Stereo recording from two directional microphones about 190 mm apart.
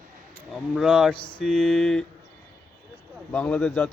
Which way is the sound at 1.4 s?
Centre (ahead or behind).